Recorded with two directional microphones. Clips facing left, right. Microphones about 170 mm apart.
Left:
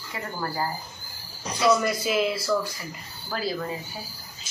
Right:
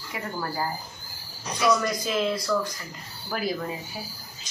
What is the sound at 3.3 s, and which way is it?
Speech, 15° right (ahead or behind).